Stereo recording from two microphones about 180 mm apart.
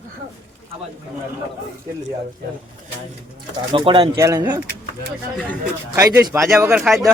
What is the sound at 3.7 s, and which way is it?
Speech, 30° right (ahead or behind).